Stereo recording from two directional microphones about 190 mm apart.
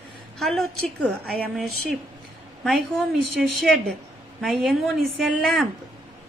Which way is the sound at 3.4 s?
Centre (ahead or behind).